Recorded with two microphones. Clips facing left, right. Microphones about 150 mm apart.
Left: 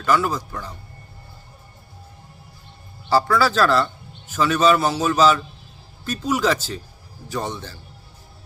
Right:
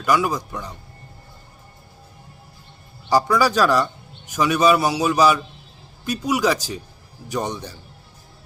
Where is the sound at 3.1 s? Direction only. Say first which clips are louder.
Right 1 dB; 15° right (ahead or behind).